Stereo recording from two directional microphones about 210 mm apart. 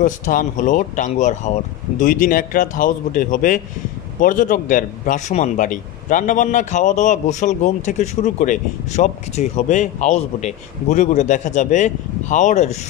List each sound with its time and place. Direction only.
0.0 s a man's voice: 40° left (ahead or behind)